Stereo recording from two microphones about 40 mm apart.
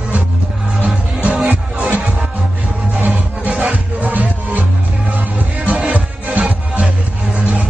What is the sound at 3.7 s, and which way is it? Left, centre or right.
Music, right.